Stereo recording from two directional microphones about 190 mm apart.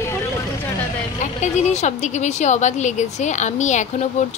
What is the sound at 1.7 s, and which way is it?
A woman's voice, 40° left (ahead or behind).